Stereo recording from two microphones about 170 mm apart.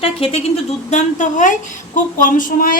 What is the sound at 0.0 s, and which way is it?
A woman's voice, 35° left (ahead or behind).